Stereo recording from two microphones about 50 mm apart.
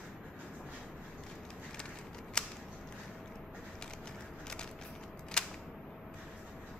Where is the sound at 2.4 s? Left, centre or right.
Centre.